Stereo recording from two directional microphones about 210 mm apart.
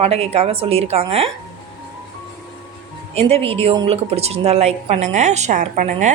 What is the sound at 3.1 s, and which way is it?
A woman's voice, 30° right (ahead or behind).